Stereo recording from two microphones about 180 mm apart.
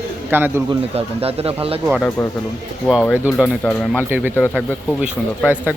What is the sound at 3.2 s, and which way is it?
Speech, 5° right (ahead or behind).